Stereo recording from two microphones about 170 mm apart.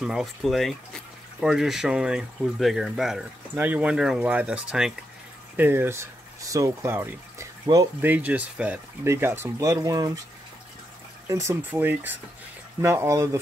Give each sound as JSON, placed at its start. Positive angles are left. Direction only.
{"t": 0.0, "sound": "speech", "side_deg": 0}
{"t": 11.2, "sound": "speech", "side_deg": -15}